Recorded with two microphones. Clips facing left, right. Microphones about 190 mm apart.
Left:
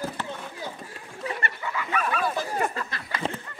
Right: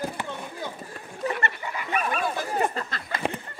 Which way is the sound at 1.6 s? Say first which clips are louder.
Even; 20° right (ahead or behind).